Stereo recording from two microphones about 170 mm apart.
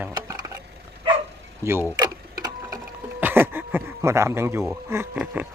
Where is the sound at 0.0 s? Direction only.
20° right (ahead or behind).